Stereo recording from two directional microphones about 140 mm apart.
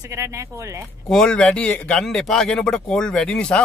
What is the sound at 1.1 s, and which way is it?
A man's voice, 5° left (ahead or behind).